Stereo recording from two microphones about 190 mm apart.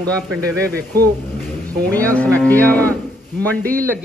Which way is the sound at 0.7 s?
55° right (ahead or behind).